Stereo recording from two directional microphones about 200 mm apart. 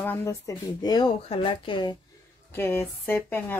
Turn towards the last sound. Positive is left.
turn(degrees=10)  # may be behind; listen again after turning